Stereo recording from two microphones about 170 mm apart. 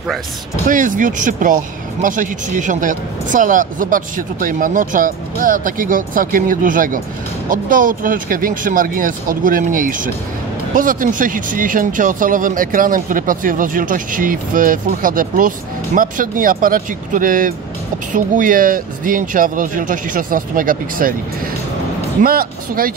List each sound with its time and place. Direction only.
0.7 s speech: 50° right (ahead or behind)
22.2 s speech: 60° right (ahead or behind)